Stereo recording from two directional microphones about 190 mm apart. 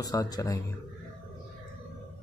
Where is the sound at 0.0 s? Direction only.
20° left (ahead or behind).